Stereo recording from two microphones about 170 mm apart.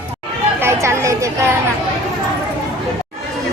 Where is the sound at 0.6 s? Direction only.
15° right (ahead or behind).